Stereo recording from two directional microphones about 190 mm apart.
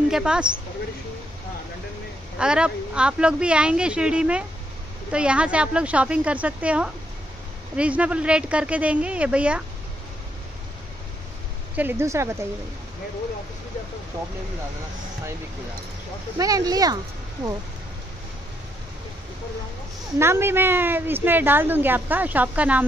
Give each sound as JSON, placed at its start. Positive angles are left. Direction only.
{"t": 0.1, "sound": "speech", "side_deg": -5}
{"t": 2.3, "sound": "a woman's voice", "side_deg": -5}
{"t": 11.7, "sound": "a woman's voice", "side_deg": -10}
{"t": 16.3, "sound": "speech", "side_deg": -20}
{"t": 20.2, "sound": "a woman's voice", "side_deg": -15}